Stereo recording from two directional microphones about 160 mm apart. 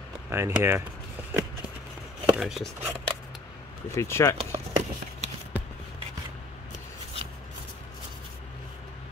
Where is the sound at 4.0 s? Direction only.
15° left (ahead or behind).